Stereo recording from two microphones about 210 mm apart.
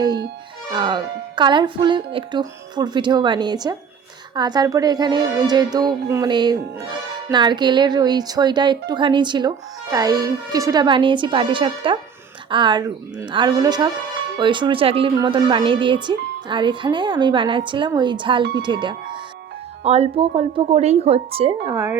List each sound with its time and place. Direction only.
0.7 s speech: 20° right (ahead or behind)